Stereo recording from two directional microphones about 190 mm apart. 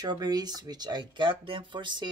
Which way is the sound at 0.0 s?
20° right (ahead or behind).